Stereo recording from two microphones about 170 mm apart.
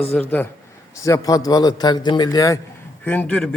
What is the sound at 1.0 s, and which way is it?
A man's voice, 20° left (ahead or behind).